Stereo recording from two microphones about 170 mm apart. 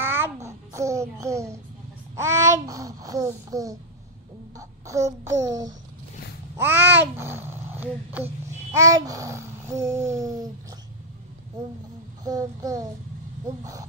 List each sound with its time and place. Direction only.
0.0 s a sound: 15° right (ahead or behind)
2.1 s babbling: 15° right (ahead or behind)
6.5 s speech: 10° right (ahead or behind)
8.7 s babbling: 20° right (ahead or behind)
12.3 s babbling: 20° right (ahead or behind)